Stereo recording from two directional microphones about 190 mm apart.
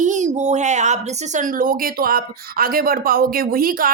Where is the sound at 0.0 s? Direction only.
40° right (ahead or behind).